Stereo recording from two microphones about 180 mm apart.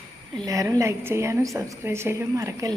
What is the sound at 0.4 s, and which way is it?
A woman's voice, 20° right (ahead or behind).